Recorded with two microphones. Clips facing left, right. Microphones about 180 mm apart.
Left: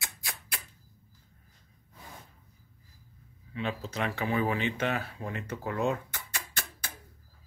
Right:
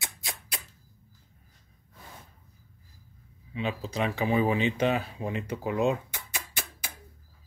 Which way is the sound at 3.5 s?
15° right (ahead or behind).